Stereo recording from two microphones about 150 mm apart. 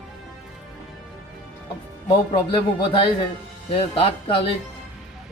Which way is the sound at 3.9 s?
40° left (ahead or behind).